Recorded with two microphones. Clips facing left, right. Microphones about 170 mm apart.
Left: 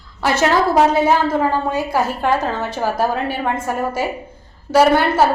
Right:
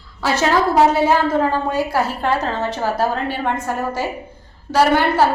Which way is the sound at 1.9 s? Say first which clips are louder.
Left 1 dB; 15° left (ahead or behind).